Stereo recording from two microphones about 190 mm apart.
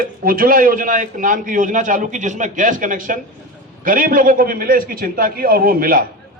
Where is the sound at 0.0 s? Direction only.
50° right (ahead or behind).